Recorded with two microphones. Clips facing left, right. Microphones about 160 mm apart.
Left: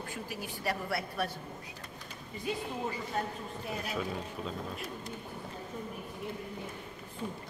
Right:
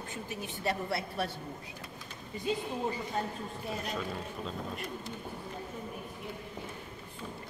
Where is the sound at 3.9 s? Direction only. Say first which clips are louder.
Left 1 dB; 5° left (ahead or behind).